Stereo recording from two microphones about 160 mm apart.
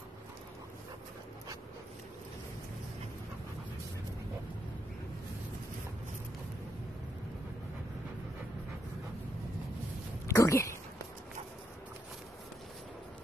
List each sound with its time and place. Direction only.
10.2 s dog: 20° left (ahead or behind)